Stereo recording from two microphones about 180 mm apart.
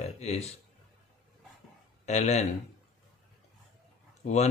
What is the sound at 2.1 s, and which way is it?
Speech, 40° left (ahead or behind).